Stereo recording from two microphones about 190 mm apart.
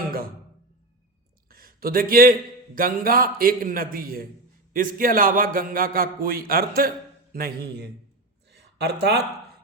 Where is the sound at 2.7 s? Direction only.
50° right (ahead or behind).